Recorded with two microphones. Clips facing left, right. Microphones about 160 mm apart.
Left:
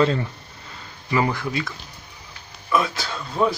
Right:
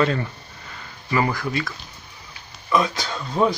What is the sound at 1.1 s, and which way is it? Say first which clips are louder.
Speech: even; 15° left (ahead or behind).